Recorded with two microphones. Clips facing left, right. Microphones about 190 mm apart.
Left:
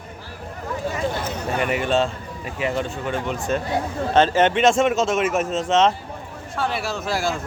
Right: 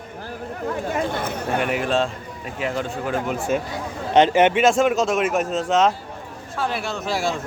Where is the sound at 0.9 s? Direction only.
55° right (ahead or behind).